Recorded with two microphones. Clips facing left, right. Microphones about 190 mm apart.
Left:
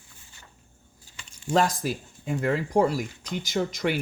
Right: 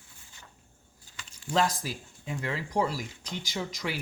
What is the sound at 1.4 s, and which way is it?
Speech, 50° left (ahead or behind).